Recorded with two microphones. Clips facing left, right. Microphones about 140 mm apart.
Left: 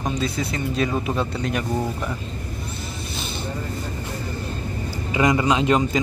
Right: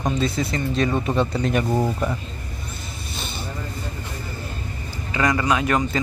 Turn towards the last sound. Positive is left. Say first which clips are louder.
# left 2 dB
turn(degrees=20)  # may be behind; listen again after turning